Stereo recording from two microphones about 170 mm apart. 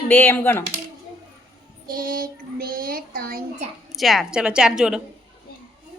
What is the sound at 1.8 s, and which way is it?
Child singing, 60° right (ahead or behind).